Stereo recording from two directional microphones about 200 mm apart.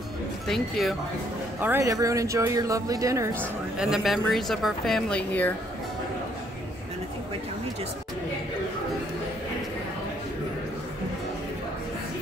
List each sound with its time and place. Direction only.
0.5 s speech: centre (ahead or behind)
1.6 s speech: 10° right (ahead or behind)
3.7 s speech: 5° right (ahead or behind)